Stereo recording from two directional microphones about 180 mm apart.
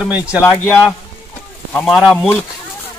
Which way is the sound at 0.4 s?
15° left (ahead or behind).